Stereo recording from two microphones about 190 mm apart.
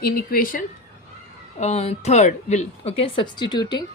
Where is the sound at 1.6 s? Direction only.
35° left (ahead or behind).